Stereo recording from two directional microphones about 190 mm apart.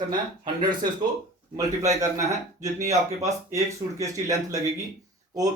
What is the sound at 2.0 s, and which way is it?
Speech, 15° right (ahead or behind).